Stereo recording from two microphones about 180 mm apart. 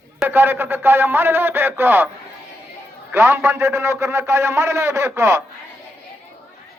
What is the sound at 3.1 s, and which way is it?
A man's voice, 15° right (ahead or behind).